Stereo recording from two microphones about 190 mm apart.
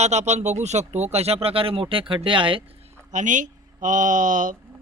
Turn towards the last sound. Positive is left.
turn(degrees=-45)  # may be behind; listen again after turning